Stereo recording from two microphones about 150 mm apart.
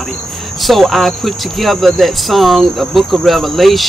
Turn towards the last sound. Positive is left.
turn(degrees=0)  # may be behind; listen again after turning